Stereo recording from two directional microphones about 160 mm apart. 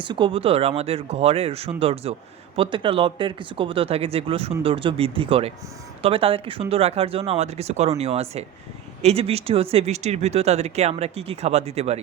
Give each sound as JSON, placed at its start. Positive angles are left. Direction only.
{"t": 0.0, "sound": "speech", "side_deg": -30}